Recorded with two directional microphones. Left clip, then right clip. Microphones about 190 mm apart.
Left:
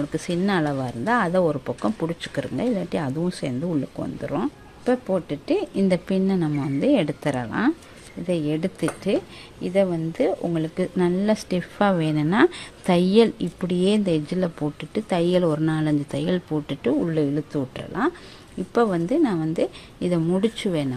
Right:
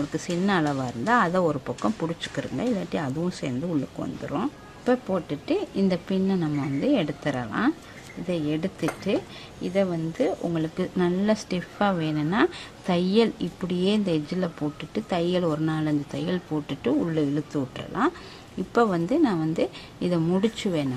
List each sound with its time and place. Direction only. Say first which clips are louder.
0.1 s a woman's voice: left 1 dB; 15° left (ahead or behind)